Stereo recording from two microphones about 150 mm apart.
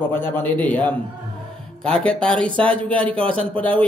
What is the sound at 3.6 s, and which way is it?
Speech, 10° left (ahead or behind).